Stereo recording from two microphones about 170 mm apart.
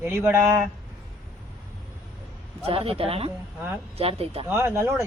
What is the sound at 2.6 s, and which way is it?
A woman's voice, 35° right (ahead or behind).